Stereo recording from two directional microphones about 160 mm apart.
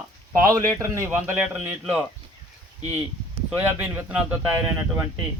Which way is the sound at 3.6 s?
10° right (ahead or behind).